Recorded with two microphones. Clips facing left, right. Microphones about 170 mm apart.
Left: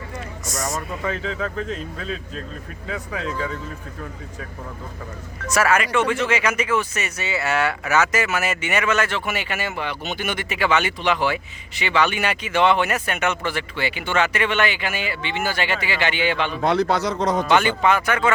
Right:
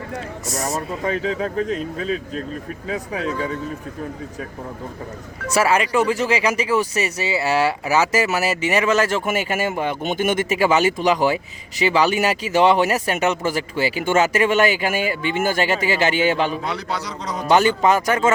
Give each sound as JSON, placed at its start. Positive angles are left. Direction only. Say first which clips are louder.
{"t": 0.7, "sound": "speech", "louder": "right 4 dB", "side_deg": -35}
{"t": 3.2, "sound": "speech", "louder": "right 2 dB", "side_deg": -15}
{"t": 5.5, "sound": "speech", "louder": "right 2 dB", "side_deg": -30}
{"t": 16.6, "sound": "a man's voice", "louder": "left 7 dB", "side_deg": 50}
{"t": 17.5, "sound": "speech", "louder": "right 6 dB", "side_deg": -40}